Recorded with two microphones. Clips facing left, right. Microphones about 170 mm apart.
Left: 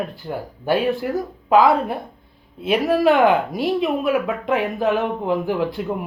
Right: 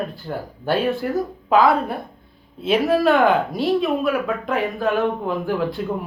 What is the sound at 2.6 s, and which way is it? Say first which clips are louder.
Speech: even; 15° left (ahead or behind).